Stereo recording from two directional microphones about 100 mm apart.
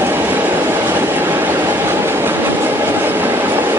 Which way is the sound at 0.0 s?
20° right (ahead or behind).